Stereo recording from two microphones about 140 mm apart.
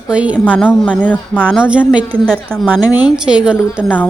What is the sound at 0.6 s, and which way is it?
Speech, 10° left (ahead or behind).